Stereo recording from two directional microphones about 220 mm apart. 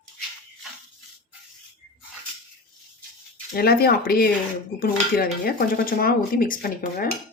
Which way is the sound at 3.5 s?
45° left (ahead or behind).